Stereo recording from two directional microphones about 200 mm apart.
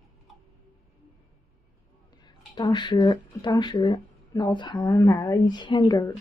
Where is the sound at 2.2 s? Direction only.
20° left (ahead or behind).